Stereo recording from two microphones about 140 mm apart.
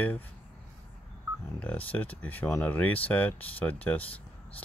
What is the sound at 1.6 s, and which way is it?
Speech, 10° left (ahead or behind).